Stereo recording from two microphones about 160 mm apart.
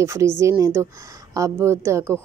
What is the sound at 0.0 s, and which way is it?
A woman's voice, 20° right (ahead or behind).